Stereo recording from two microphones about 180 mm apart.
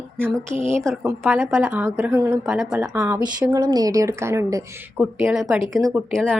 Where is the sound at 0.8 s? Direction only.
5° right (ahead or behind).